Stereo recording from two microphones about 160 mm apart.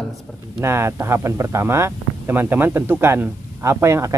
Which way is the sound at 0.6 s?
15° right (ahead or behind).